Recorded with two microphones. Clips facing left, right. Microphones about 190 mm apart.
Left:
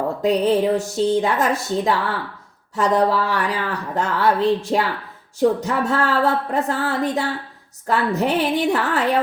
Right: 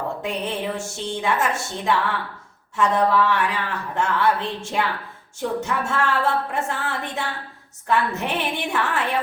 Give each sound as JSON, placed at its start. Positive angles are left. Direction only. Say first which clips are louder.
{"t": 0.2, "sound": "speech", "louder": "left 10 dB", "side_deg": 35}